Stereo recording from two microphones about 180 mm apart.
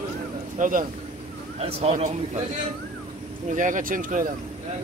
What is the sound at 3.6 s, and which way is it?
Speech, 45° right (ahead or behind).